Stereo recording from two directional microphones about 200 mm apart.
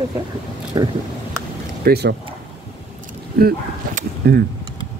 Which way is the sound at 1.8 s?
55° right (ahead or behind).